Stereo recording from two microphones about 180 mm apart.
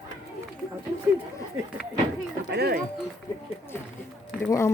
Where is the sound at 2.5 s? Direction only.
60° right (ahead or behind).